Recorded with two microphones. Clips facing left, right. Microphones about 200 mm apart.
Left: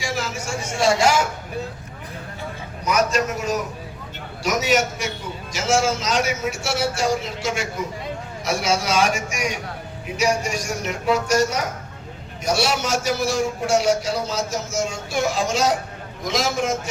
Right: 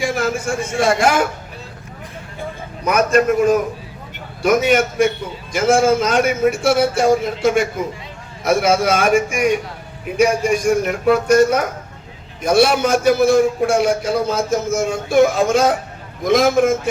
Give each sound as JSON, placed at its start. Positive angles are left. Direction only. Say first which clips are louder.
{"t": 0.0, "sound": "a man's voice", "louder": "right 8 dB", "side_deg": -55}
{"t": 2.8, "sound": "a man's voice", "louder": "right 6 dB", "side_deg": -55}